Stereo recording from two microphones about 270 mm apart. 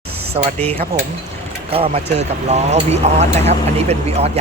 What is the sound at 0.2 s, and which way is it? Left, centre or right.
Speech, right.